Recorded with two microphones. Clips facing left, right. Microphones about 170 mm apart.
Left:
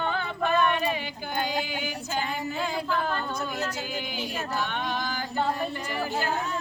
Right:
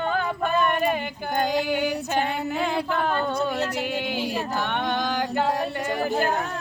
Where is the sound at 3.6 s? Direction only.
65° right (ahead or behind).